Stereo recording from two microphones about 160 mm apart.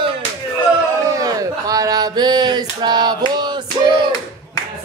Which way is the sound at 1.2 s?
20° right (ahead or behind).